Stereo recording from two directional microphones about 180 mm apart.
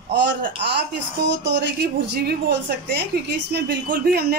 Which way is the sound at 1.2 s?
75° right (ahead or behind).